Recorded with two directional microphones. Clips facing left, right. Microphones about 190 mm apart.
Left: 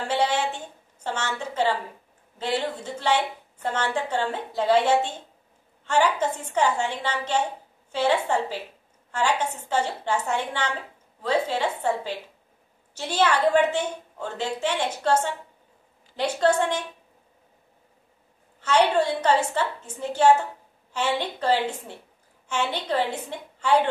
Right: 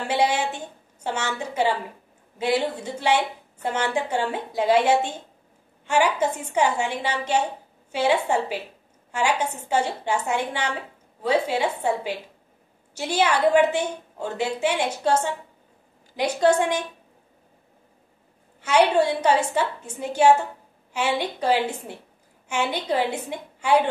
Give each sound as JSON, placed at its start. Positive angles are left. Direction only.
{"t": 0.1, "sound": "a sound", "side_deg": -10}
{"t": 1.0, "sound": "a woman's voice", "side_deg": -10}
{"t": 18.6, "sound": "a woman's voice", "side_deg": -10}